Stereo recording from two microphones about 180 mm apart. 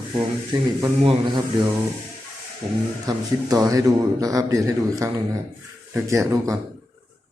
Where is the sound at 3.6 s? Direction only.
20° right (ahead or behind).